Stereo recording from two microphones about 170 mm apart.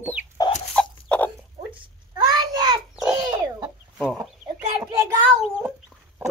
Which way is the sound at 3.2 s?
25° right (ahead or behind).